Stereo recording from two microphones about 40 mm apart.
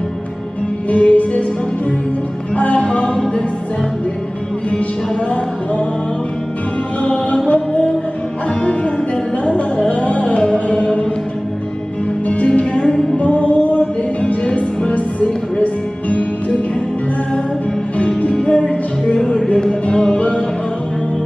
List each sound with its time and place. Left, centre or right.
0.8 s music: left
2.5 s music: left
7.0 s music: left
9.4 s music: left
12.3 s music: left
12.9 s music: centre
13.2 s music: left
17.9 s music: left
19.2 s music: centre; by 20.4 s left